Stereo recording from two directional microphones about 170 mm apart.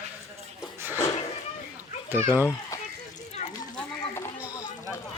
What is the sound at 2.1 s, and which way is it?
Speech, 10° right (ahead or behind).